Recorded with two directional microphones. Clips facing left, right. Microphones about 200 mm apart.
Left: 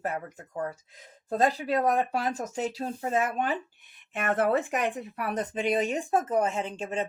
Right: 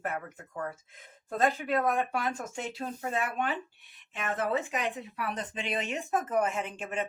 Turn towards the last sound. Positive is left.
turn(degrees=30)  # may be behind; listen again after turning